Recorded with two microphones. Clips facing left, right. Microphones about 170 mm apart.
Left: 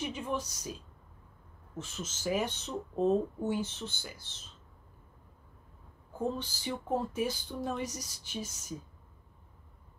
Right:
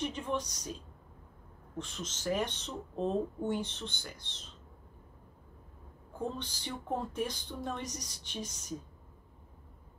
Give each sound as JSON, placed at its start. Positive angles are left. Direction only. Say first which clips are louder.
{"t": 0.0, "sound": "speech", "louder": "even", "side_deg": 10}
{"t": 1.8, "sound": "speech", "louder": "even", "side_deg": 5}
{"t": 6.1, "sound": "speech", "louder": "left 3 dB", "side_deg": 5}